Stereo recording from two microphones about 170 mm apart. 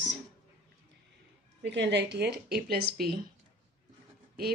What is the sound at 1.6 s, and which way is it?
A woman's voice, 90° right.